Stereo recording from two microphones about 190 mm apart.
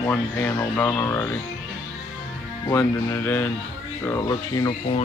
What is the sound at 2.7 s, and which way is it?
Speech, 10° left (ahead or behind).